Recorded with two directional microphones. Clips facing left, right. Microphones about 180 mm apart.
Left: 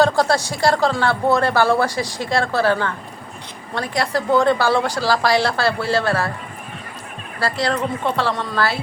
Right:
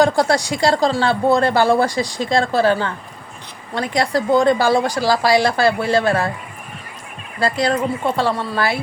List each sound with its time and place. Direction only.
0.0 s speech: 15° right (ahead or behind)
7.3 s speech: 15° right (ahead or behind)